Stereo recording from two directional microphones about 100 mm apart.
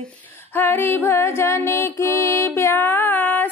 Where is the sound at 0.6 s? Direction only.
20° left (ahead or behind).